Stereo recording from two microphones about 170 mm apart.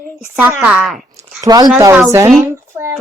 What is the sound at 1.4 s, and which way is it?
Speech, 20° right (ahead or behind).